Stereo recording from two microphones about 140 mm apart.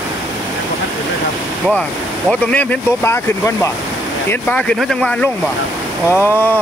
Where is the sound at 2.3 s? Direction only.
5° left (ahead or behind).